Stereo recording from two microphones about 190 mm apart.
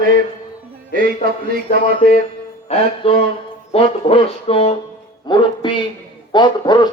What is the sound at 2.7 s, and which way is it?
Speech, 30° left (ahead or behind).